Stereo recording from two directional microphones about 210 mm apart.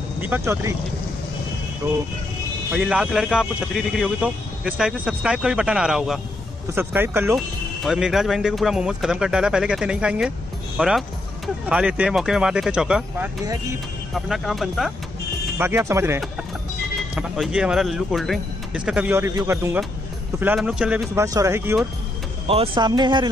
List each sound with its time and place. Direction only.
0.3 s speech: 15° right (ahead or behind)
1.8 s speech: 15° right (ahead or behind)
2.7 s speech: 5° right (ahead or behind)
15.5 s speech: 10° right (ahead or behind)
22.5 s speech: 25° right (ahead or behind)